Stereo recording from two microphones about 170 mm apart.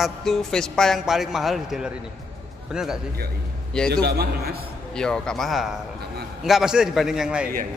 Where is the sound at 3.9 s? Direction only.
70° right (ahead or behind).